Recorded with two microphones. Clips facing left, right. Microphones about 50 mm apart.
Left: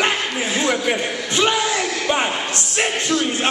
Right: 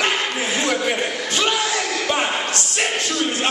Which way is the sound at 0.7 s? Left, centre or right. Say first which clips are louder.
Left 1 dB; centre.